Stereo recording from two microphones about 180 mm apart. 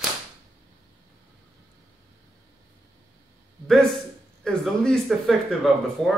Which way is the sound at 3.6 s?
Centre (ahead or behind).